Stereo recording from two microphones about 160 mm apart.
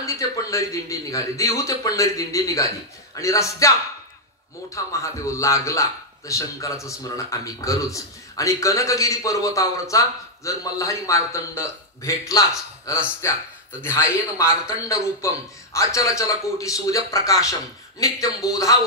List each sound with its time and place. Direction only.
0.0 s a man's voice: 20° left (ahead or behind)